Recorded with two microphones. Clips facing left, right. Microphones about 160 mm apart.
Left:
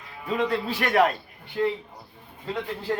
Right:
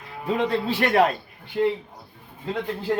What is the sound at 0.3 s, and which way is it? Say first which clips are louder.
Speech: right 2 dB; 30° right (ahead or behind).